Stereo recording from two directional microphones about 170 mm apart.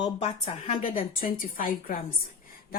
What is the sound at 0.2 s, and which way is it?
A woman's voice, 40° left (ahead or behind).